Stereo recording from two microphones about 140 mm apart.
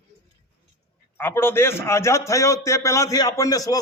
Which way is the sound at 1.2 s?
15° left (ahead or behind).